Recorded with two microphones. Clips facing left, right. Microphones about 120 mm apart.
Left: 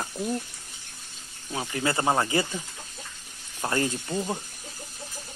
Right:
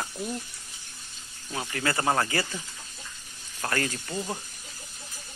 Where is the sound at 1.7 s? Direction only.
20° left (ahead or behind).